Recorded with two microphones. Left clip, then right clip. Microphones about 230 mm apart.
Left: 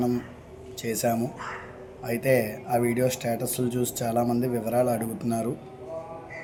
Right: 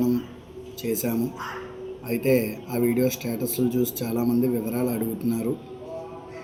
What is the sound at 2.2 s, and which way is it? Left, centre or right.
Speech, centre.